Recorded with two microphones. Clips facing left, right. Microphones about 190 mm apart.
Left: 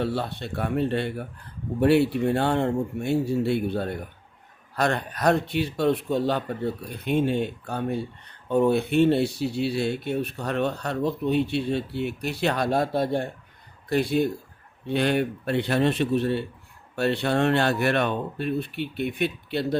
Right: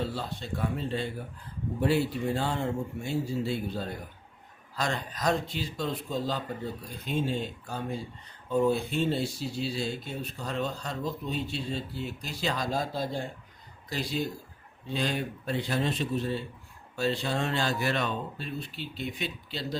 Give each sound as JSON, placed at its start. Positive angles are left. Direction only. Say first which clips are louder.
{"t": 0.0, "sound": "speech", "louder": "left 6 dB", "side_deg": 65}